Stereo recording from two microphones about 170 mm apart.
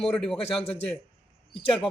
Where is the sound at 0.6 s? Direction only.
35° left (ahead or behind).